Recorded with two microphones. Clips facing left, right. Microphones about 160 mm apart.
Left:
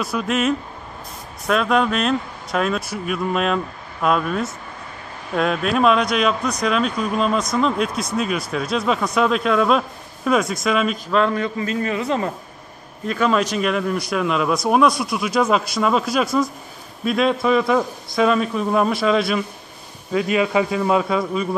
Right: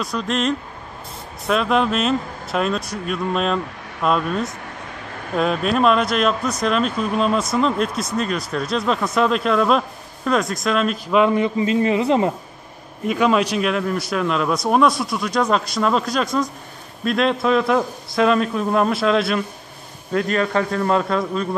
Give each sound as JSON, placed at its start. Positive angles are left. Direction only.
{"t": 0.0, "sound": "speech", "side_deg": 5}
{"t": 11.3, "sound": "a man's voice", "side_deg": -20}
{"t": 13.0, "sound": "a man's voice", "side_deg": -5}